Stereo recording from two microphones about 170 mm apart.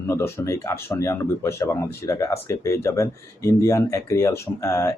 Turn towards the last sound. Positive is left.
turn(degrees=15)  # may be behind; listen again after turning